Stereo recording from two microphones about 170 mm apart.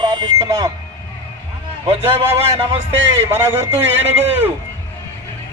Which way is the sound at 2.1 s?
15° right (ahead or behind).